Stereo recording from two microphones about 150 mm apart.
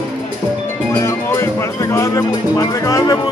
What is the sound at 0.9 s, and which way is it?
Speech, 20° left (ahead or behind).